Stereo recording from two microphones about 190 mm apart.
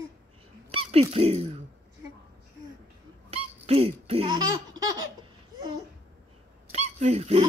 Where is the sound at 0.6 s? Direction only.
30° right (ahead or behind).